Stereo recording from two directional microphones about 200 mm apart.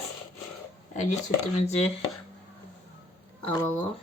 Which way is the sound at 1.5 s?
35° left (ahead or behind).